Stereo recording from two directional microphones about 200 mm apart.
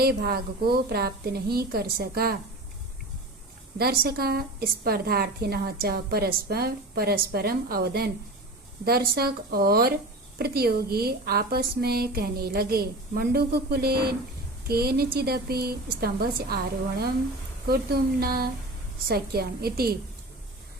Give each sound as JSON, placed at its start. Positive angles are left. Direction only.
{"t": 0.0, "sound": "a woman's voice", "side_deg": -50}
{"t": 3.8, "sound": "a woman's voice", "side_deg": -50}
{"t": 17.7, "sound": "a woman's voice", "side_deg": -50}